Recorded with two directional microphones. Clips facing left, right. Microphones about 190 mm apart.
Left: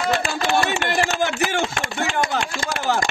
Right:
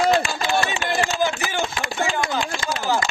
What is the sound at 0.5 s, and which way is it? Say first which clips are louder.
A man's voice: left 5 dB; 65° left (ahead or behind).